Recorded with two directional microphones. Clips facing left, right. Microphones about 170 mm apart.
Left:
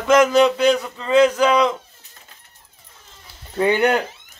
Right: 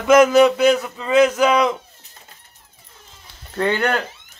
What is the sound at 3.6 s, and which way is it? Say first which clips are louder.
Speech: left 3 dB; 15° left (ahead or behind).